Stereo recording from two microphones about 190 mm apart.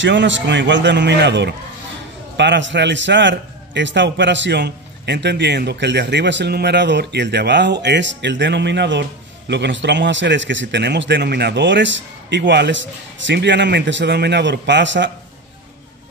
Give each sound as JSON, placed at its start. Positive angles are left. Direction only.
{"t": 0.0, "sound": "a man's voice", "side_deg": -70}